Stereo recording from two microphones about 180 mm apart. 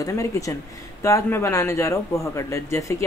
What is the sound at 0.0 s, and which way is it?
A man's voice, 15° left (ahead or behind).